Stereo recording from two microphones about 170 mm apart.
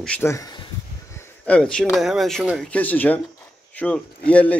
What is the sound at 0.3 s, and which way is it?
A man's voice, 20° left (ahead or behind).